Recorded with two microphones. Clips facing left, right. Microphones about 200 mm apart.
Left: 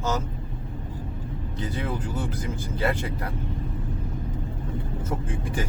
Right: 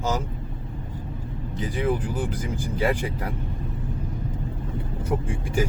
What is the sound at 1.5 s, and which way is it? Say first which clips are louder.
Speech: right 5 dB; 15° right (ahead or behind).